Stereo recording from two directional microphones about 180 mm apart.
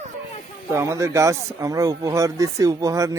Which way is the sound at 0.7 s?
15° right (ahead or behind).